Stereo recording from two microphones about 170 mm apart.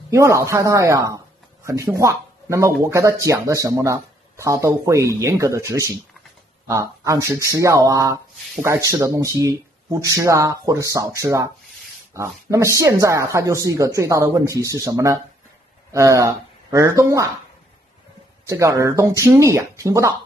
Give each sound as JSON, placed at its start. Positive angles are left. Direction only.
{"t": 0.1, "sound": "speech", "side_deg": -15}
{"t": 18.4, "sound": "speech", "side_deg": -20}